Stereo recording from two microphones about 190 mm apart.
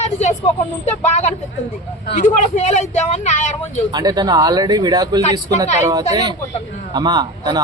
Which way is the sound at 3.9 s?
20° right (ahead or behind).